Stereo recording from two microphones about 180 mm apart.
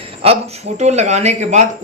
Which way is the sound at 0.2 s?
35° right (ahead or behind).